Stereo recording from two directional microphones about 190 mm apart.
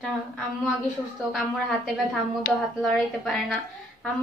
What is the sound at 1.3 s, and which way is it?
A woman's voice, centre (ahead or behind).